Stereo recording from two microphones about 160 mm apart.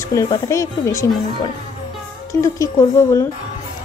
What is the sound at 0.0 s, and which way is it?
A woman's voice, 20° left (ahead or behind).